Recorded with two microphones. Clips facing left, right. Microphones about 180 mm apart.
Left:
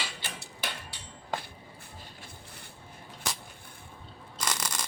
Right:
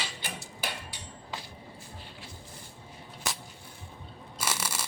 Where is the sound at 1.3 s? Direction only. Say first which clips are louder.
Left 6 dB; 50° left (ahead or behind).